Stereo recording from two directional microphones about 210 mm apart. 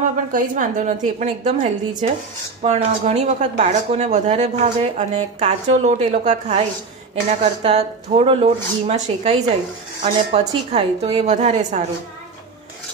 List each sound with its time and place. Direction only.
0.3 s speech: 40° right (ahead or behind)